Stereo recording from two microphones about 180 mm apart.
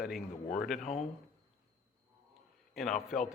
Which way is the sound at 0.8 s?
45° left (ahead or behind).